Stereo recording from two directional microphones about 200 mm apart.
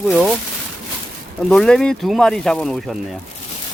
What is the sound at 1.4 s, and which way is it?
Speech, 5° left (ahead or behind).